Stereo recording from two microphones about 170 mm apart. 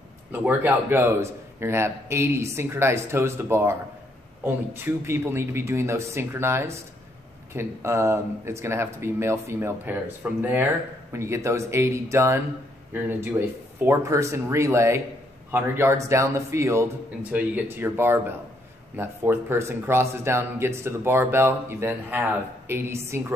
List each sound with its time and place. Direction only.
0.3 s speech: 10° right (ahead or behind)